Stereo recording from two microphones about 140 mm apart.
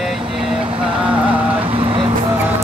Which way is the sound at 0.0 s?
Centre (ahead or behind).